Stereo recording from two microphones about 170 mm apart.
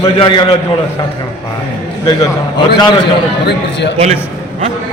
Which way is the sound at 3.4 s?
90° left.